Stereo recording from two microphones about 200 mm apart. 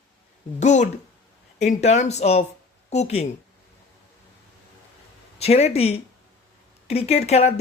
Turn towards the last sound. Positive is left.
turn(degrees=30)  # may be behind; listen again after turning